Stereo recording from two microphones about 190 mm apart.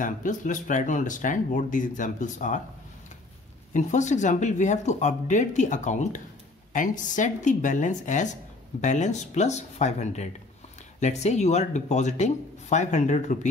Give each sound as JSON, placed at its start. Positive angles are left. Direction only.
{"t": 0.0, "sound": "speech", "side_deg": 45}
{"t": 3.7, "sound": "speech", "side_deg": 40}